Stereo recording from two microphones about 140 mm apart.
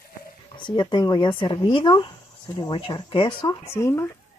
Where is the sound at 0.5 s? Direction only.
35° left (ahead or behind).